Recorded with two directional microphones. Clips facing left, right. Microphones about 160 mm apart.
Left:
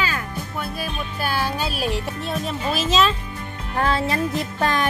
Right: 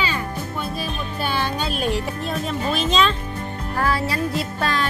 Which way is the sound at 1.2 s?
5° left (ahead or behind).